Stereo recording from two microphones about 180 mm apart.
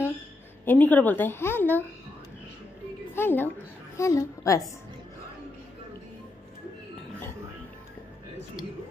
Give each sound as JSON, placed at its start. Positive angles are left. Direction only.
{"t": 0.7, "sound": "a woman's voice", "side_deg": 10}
{"t": 3.2, "sound": "a woman's voice", "side_deg": 10}